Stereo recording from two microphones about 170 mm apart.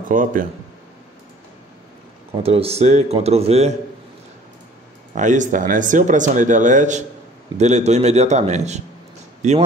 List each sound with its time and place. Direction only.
0.1 s speech: 50° right (ahead or behind)
2.4 s a man's voice: 35° right (ahead or behind)
5.1 s a man's voice: 45° right (ahead or behind)